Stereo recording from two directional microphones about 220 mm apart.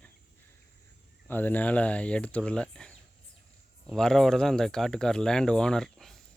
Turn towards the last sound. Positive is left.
turn(degrees=0)  # may be behind; listen again after turning